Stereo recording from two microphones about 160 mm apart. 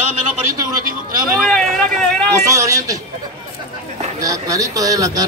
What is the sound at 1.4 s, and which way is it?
Speech, 5° left (ahead or behind).